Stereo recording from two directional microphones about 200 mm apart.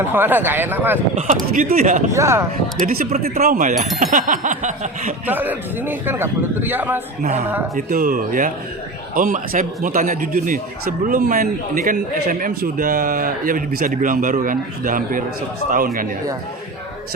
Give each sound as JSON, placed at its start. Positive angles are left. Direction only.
{"t": 0.0, "sound": "a man's voice", "side_deg": -10}
{"t": 1.5, "sound": "a sound", "side_deg": -40}
{"t": 2.1, "sound": "a man's voice", "side_deg": -15}
{"t": 2.8, "sound": "speech", "side_deg": -45}
{"t": 4.0, "sound": "a sound", "side_deg": -40}
{"t": 5.2, "sound": "a man's voice", "side_deg": -10}
{"t": 7.8, "sound": "speech", "side_deg": -45}